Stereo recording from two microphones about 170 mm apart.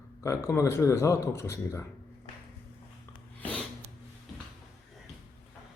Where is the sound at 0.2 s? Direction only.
15° left (ahead or behind).